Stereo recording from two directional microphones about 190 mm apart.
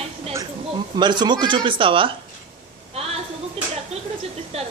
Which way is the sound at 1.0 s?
25° right (ahead or behind).